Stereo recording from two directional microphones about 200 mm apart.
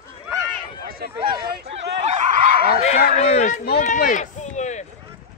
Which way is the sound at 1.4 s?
50° right (ahead or behind).